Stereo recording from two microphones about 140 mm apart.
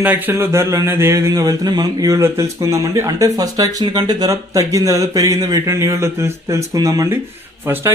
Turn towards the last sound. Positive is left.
turn(degrees=-15)  # may be behind; listen again after turning